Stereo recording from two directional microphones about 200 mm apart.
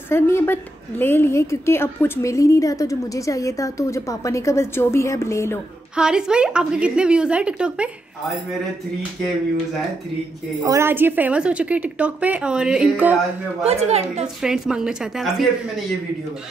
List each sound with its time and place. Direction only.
0.1 s a woman's voice: 10° left (ahead or behind)
5.9 s a woman's voice: 5° right (ahead or behind)
10.6 s a woman's voice: 15° right (ahead or behind)
13.7 s a woman's voice: 30° right (ahead or behind)
14.2 s a woman's voice: 5° right (ahead or behind)